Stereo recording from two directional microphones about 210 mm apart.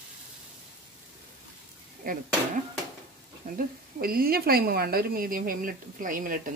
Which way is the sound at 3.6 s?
45° right (ahead or behind).